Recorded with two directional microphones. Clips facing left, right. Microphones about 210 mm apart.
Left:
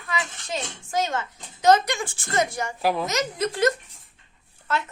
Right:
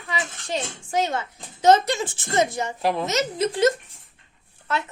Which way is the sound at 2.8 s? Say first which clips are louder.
Even; 5° left (ahead or behind).